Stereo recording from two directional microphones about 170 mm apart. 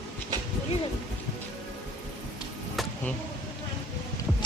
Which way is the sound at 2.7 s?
Centre (ahead or behind).